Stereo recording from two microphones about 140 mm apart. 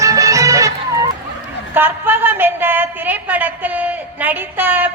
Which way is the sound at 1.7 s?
15° right (ahead or behind).